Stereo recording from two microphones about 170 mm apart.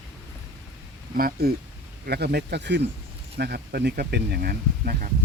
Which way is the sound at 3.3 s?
70° right (ahead or behind).